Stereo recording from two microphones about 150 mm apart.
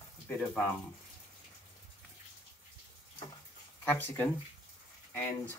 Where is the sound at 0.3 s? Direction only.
10° left (ahead or behind).